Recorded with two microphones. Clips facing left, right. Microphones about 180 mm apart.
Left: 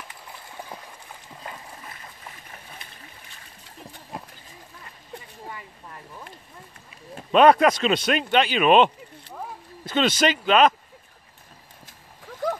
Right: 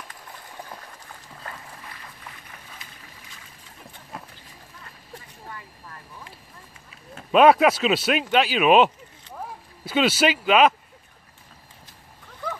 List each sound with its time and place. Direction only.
1.4 s splash: 20° left (ahead or behind)
7.2 s speech: 5° right (ahead or behind)